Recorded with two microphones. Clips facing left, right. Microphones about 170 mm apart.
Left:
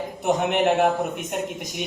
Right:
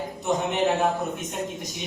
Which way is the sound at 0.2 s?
65° left (ahead or behind).